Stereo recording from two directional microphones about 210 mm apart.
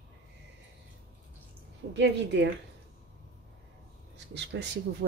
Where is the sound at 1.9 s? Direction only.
55° right (ahead or behind).